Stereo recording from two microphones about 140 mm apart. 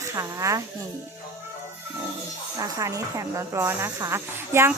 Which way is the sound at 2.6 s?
25° right (ahead or behind).